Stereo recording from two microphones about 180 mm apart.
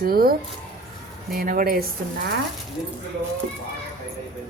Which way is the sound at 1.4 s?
55° right (ahead or behind).